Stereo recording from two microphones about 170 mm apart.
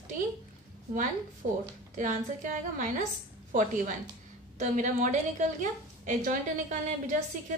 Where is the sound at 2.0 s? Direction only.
50° right (ahead or behind).